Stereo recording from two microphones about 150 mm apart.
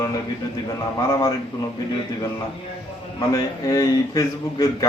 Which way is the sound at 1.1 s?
25° left (ahead or behind).